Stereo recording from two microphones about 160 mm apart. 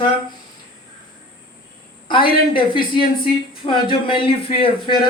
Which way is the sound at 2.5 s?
30° left (ahead or behind).